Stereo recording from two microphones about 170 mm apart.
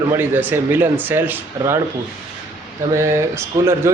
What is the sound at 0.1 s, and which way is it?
Speech, 10° right (ahead or behind).